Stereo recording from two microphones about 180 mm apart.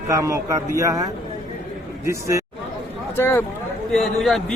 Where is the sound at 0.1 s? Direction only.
15° right (ahead or behind).